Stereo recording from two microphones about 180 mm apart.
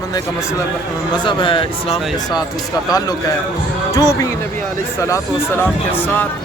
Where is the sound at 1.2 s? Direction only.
25° left (ahead or behind).